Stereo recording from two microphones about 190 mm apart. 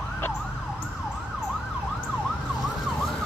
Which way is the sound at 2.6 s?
Centre (ahead or behind).